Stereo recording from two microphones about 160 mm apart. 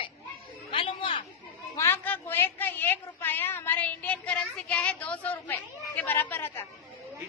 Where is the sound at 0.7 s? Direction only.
35° left (ahead or behind).